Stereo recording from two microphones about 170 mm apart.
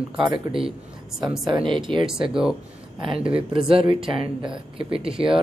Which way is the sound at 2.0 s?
5° right (ahead or behind).